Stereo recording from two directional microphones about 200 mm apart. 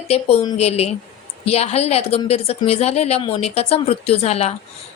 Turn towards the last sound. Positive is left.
turn(degrees=30)  # may be behind; listen again after turning